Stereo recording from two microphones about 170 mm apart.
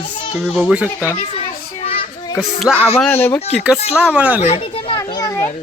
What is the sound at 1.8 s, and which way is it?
Children playing, 35° left (ahead or behind).